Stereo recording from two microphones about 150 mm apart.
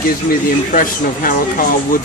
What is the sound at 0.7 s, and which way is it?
Speech, 65° left (ahead or behind).